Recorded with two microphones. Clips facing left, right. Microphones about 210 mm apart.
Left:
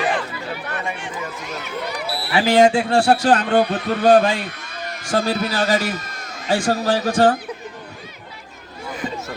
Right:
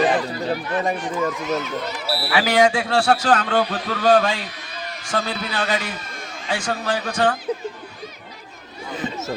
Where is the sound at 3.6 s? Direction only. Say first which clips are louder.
Left 4 dB; 55° left (ahead or behind).